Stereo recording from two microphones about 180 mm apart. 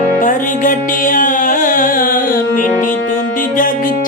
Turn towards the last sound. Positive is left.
turn(degrees=50)  # may be behind; listen again after turning